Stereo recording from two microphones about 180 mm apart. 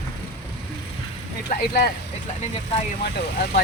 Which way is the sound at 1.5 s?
55° left (ahead or behind).